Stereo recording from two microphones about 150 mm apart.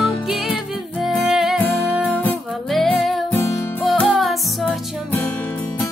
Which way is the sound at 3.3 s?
20° left (ahead or behind).